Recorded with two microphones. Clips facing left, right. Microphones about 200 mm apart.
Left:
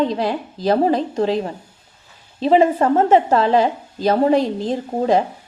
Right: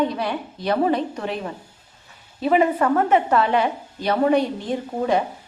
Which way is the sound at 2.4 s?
25° left (ahead or behind).